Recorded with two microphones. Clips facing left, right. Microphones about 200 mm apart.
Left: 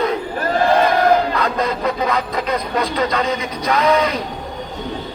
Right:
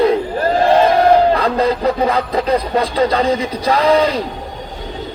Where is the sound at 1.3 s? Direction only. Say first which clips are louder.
Right 4 dB; 30° right (ahead or behind).